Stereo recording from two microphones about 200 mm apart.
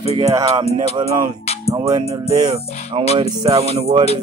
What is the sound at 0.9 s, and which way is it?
Speech, 25° right (ahead or behind).